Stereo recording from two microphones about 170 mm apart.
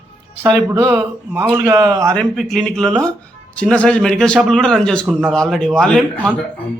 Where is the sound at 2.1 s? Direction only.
Centre (ahead or behind).